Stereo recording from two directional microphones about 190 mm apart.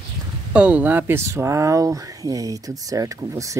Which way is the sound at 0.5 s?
5° right (ahead or behind).